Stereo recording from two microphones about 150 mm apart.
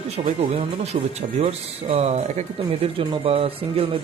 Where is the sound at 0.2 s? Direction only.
40° right (ahead or behind).